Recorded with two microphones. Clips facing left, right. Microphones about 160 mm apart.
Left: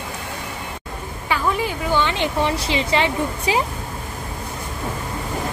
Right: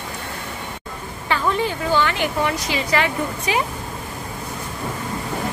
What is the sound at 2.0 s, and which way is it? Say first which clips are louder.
Speech: even; 25° left (ahead or behind).